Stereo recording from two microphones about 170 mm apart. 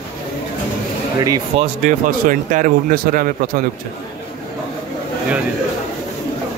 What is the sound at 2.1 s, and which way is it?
Speech, 55° right (ahead or behind).